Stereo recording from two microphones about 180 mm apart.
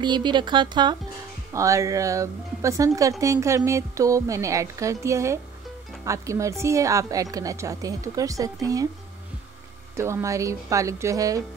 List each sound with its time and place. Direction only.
0.0 s a woman's voice: 25° right (ahead or behind)
9.9 s a woman's voice: 15° right (ahead or behind)